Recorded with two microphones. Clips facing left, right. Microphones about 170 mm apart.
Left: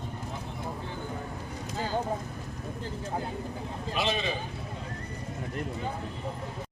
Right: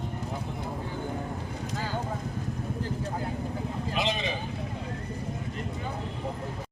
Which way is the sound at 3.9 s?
15° right (ahead or behind).